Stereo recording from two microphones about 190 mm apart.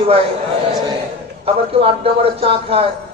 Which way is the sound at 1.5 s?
30° right (ahead or behind).